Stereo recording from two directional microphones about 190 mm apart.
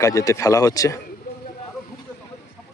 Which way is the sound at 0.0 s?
15° left (ahead or behind).